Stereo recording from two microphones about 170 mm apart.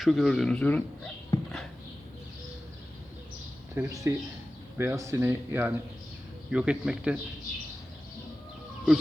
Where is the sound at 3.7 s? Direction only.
15° right (ahead or behind).